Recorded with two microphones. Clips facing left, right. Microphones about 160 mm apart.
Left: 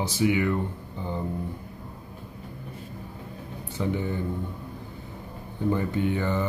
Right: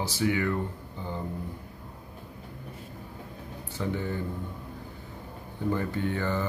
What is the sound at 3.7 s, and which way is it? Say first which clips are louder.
Speech: left 3 dB; 15° left (ahead or behind).